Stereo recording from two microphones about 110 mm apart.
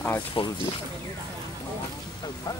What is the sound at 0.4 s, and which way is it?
Speech, 50° left (ahead or behind).